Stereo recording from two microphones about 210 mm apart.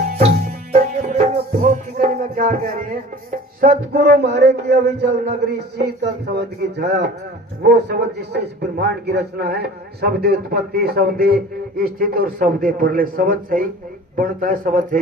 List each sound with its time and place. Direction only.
0.0 s music: 30° right (ahead or behind); by 5.1 s 50° right (ahead or behind)
5.5 s a man's voice: 50° right (ahead or behind)